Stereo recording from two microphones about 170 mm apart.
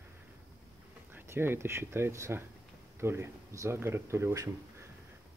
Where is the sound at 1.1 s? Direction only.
15° right (ahead or behind).